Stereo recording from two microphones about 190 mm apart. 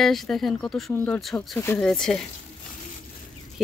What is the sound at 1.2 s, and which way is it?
Speech, centre (ahead or behind).